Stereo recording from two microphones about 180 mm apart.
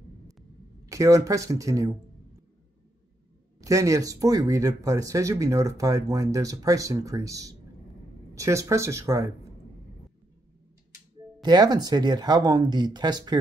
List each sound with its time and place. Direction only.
0.8 s speech: 15° right (ahead or behind)
3.6 s speech: 20° right (ahead or behind)
11.4 s speech: 25° right (ahead or behind)